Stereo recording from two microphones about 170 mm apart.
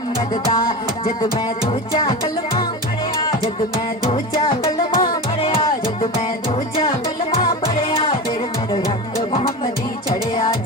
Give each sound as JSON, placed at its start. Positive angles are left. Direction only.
{"t": 0.5, "sound": "music", "side_deg": 20}
{"t": 4.6, "sound": "music", "side_deg": 35}
{"t": 7.3, "sound": "music", "side_deg": 35}